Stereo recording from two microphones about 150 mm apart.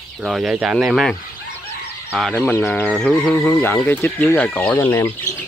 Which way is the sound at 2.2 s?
5° left (ahead or behind).